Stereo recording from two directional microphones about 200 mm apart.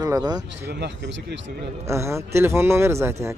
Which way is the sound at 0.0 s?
20° right (ahead or behind).